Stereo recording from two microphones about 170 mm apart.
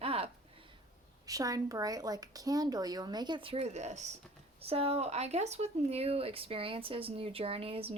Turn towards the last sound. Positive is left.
turn(degrees=-35)  # may be behind; listen again after turning